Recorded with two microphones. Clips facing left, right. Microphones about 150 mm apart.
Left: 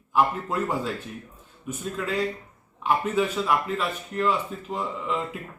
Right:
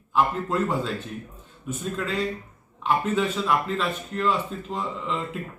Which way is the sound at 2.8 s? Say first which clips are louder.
Even; 10° left (ahead or behind).